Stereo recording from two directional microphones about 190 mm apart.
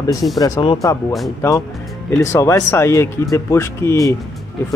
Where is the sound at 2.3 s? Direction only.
15° left (ahead or behind).